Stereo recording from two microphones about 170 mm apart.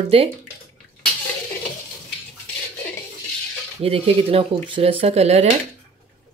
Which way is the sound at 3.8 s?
35° right (ahead or behind).